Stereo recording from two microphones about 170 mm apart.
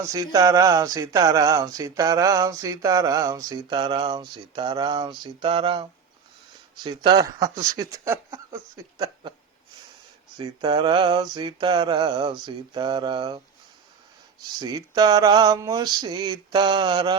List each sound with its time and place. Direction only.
0.0 s speech: 20° right (ahead or behind)
10.3 s speech: 25° right (ahead or behind)
14.4 s speech: 25° right (ahead or behind)